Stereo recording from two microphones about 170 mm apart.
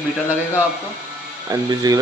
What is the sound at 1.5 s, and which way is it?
Speech, 20° right (ahead or behind).